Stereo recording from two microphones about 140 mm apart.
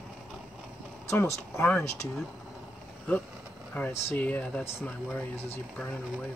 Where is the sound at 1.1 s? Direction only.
15° left (ahead or behind).